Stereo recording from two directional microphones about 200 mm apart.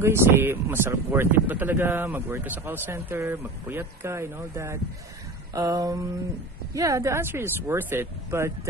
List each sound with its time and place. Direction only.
0.0 s speech: 10° right (ahead or behind)